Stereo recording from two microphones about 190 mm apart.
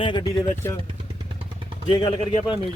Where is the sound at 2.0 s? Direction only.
30° left (ahead or behind).